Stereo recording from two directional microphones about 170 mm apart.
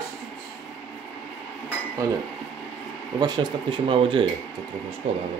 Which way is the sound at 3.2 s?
25° right (ahead or behind).